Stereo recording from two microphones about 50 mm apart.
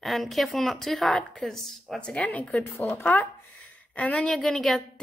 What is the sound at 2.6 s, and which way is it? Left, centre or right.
Speech, left.